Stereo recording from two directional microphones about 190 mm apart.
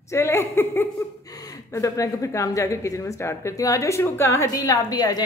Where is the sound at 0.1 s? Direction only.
15° left (ahead or behind).